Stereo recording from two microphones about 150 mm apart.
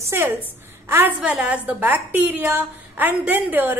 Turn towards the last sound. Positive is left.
turn(degrees=-10)  # may be behind; listen again after turning